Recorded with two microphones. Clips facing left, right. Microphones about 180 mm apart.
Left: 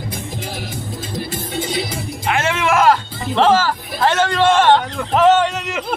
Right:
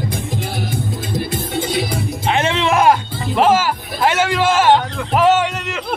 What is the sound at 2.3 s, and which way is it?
Music, 20° right (ahead or behind).